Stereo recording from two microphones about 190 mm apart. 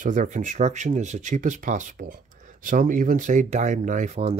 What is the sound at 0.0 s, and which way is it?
Speech, 45° right (ahead or behind).